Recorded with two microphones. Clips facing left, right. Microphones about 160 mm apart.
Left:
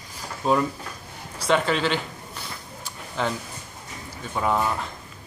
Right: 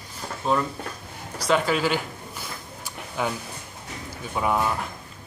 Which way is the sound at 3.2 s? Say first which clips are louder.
Left 1 dB; 10° right (ahead or behind).